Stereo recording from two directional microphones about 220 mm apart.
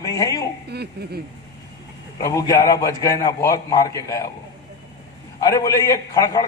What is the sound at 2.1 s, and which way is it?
A man's voice, 15° left (ahead or behind).